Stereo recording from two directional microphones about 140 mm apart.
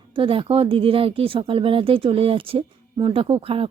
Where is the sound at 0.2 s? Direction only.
40° right (ahead or behind).